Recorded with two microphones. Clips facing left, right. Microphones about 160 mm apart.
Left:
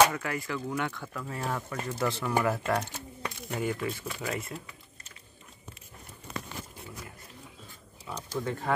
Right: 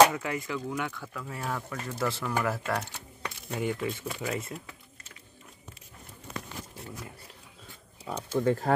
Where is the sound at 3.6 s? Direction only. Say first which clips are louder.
Right 1 dB; 20° right (ahead or behind).